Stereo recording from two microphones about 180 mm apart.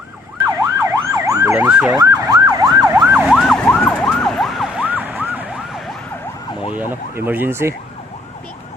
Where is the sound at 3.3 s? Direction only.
5° left (ahead or behind).